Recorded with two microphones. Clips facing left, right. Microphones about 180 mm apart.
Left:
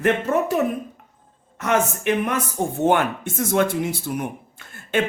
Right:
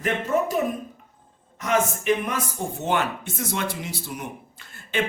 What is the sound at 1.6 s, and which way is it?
Speech, 60° left (ahead or behind).